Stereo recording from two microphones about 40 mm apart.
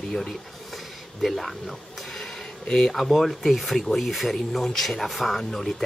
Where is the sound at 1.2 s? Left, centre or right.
Centre.